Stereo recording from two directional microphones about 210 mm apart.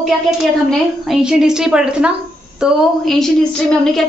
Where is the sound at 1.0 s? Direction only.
Centre (ahead or behind).